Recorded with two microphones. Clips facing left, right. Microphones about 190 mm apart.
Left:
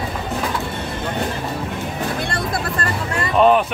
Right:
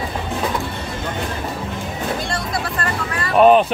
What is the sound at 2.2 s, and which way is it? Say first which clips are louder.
Music: left 1 dB; 55° left (ahead or behind).